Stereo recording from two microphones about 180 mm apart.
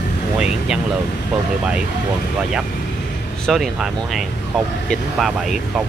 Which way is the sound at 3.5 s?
Centre (ahead or behind).